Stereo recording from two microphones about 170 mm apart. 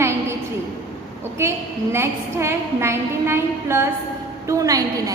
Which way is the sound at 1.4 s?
15° right (ahead or behind).